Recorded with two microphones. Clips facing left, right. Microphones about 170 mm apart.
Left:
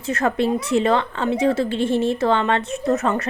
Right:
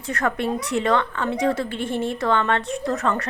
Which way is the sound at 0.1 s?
25° left (ahead or behind).